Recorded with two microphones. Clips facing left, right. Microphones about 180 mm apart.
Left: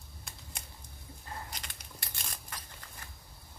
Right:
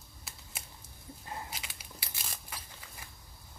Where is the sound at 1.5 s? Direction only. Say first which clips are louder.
Right 1 dB; 5° right (ahead or behind).